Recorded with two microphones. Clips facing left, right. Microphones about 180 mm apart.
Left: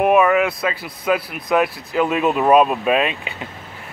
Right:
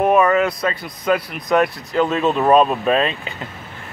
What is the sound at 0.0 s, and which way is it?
Speech, 10° left (ahead or behind).